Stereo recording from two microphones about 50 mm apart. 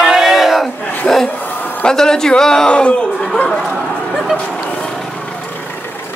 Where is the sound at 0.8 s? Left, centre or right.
Left.